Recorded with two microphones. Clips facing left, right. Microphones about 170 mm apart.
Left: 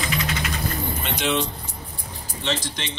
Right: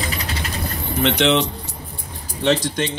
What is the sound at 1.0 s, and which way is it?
Speech, 70° right (ahead or behind).